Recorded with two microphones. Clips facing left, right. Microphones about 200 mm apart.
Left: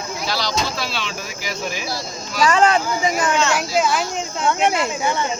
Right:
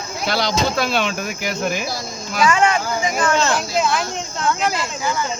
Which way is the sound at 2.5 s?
35° left (ahead or behind).